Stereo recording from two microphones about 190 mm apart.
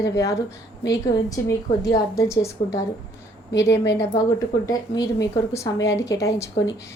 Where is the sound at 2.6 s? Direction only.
35° left (ahead or behind).